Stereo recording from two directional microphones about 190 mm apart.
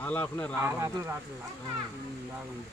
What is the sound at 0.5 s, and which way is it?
Speech, 15° right (ahead or behind).